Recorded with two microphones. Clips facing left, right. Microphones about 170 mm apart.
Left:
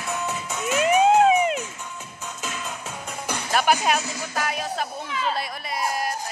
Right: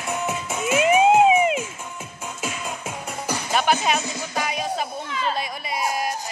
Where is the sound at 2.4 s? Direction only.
10° right (ahead or behind).